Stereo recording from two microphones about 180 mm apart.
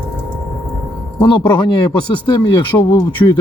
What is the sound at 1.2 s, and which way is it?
Speech, 30° left (ahead or behind).